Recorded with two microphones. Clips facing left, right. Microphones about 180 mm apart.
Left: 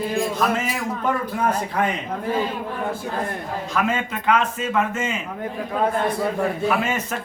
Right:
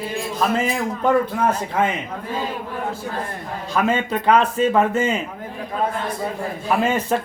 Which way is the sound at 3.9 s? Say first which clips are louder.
Right 6 dB; 35° right (ahead or behind).